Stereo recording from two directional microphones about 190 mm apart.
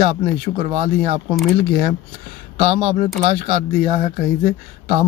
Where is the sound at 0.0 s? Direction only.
30° right (ahead or behind).